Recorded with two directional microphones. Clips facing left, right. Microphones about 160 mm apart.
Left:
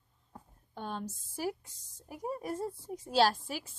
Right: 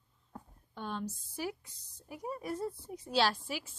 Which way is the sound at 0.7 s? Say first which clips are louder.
Even; 45° left (ahead or behind).